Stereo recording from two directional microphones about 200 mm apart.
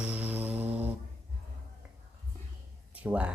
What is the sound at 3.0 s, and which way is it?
Speech, 5° right (ahead or behind).